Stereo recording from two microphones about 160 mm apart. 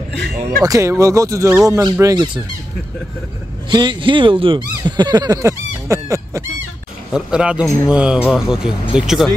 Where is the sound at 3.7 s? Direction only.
30° right (ahead or behind).